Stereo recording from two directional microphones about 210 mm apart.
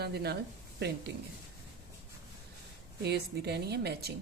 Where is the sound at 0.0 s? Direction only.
50° right (ahead or behind).